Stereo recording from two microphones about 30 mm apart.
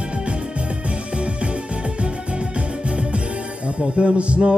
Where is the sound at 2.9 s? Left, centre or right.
Right.